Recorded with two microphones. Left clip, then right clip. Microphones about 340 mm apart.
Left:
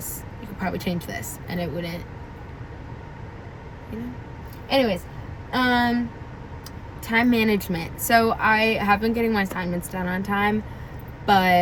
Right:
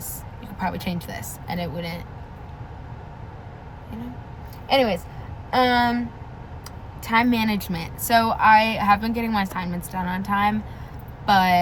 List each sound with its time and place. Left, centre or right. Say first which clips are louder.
0.6 s a woman's voice: right 1 dB; centre
4.7 s speech: right 2 dB; centre
7.1 s a woman's voice: even; centre
9.7 s a woman's voice: even; right
10.2 s a woman's voice: right 2 dB; centre